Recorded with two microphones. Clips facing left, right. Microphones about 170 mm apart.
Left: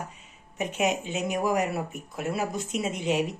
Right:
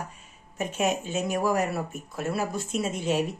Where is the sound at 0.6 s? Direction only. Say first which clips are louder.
Even; 15° left (ahead or behind).